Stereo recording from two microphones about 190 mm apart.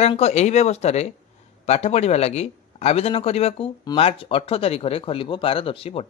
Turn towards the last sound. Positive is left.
turn(degrees=30)  # may be behind; listen again after turning